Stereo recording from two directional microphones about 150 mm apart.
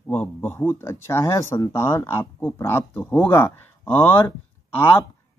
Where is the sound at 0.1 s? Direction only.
15° left (ahead or behind).